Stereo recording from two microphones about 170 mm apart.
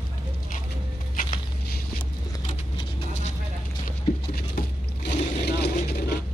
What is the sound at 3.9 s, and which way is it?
Boat, 65° left (ahead or behind).